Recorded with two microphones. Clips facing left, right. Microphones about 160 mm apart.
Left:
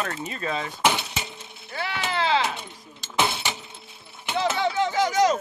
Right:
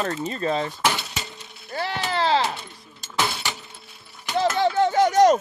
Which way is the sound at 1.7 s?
40° right (ahead or behind).